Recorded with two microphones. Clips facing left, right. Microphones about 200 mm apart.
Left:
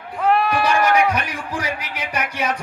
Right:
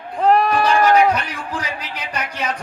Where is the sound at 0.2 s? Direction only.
40° right (ahead or behind).